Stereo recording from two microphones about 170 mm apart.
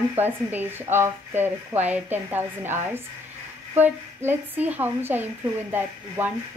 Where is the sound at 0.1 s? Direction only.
10° right (ahead or behind).